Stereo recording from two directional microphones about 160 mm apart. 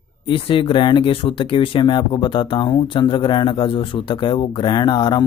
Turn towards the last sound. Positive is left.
turn(degrees=30)  # may be behind; listen again after turning